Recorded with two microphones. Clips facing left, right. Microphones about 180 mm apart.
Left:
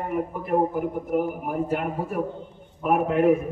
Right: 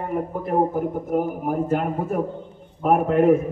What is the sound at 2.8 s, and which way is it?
Speech, 40° right (ahead or behind).